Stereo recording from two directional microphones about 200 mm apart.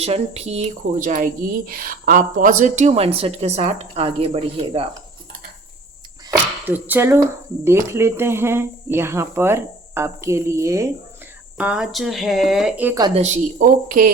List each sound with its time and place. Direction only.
0.0 s speech: 30° right (ahead or behind)
6.3 s speech: 10° right (ahead or behind)
13.0 s speech: 20° right (ahead or behind)
13.2 s speech: 45° right (ahead or behind)